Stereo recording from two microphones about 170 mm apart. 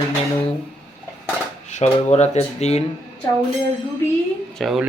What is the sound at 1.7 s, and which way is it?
Speech, 40° left (ahead or behind).